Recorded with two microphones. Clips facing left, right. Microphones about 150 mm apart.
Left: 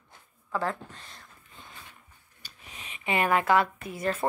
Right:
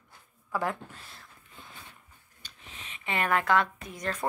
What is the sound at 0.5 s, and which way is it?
Speech, 10° right (ahead or behind).